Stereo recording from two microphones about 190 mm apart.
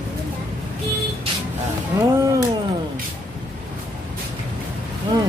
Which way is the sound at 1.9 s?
15° right (ahead or behind).